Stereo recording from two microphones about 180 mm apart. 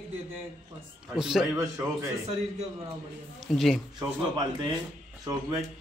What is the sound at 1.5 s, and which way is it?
Speech, 20° right (ahead or behind).